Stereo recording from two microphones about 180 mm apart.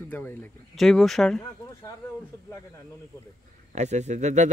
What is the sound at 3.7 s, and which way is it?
Speech, 40° right (ahead or behind).